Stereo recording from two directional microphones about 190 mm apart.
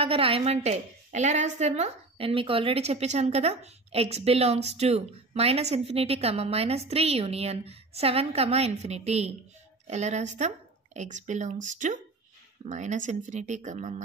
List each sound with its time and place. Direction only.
0.0 s a woman's voice: 30° right (ahead or behind)